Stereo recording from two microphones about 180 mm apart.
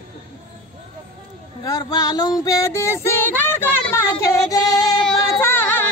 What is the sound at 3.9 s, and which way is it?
Female singing, 20° left (ahead or behind).